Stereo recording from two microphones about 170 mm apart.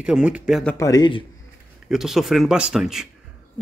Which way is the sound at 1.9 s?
Centre (ahead or behind).